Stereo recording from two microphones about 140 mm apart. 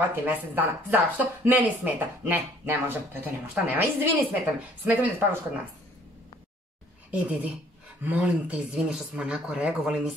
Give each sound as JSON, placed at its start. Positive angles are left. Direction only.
{"t": 0.1, "sound": "speech", "side_deg": -15}
{"t": 7.1, "sound": "speech", "side_deg": -10}